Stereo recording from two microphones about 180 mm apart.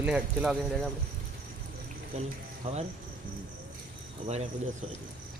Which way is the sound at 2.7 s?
35° right (ahead or behind).